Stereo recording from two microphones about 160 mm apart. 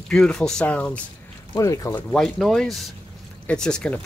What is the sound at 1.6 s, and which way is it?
Speech, 20° left (ahead or behind).